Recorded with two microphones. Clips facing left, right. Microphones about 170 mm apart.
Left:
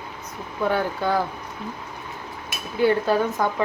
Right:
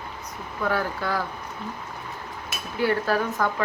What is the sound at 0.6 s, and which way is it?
Speech, 20° left (ahead or behind).